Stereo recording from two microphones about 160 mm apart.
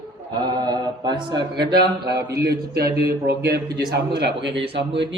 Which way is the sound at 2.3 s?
90° right.